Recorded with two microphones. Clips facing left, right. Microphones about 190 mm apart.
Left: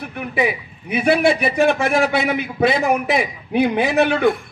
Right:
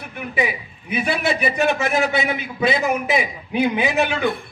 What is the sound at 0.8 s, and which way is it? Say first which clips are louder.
A man's voice: left 6 dB; 65° left (ahead or behind).